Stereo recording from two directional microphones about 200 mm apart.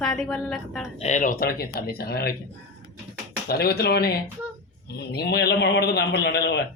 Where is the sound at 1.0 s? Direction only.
35° left (ahead or behind).